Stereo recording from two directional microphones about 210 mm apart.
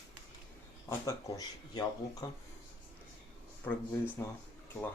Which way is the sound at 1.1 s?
15° left (ahead or behind).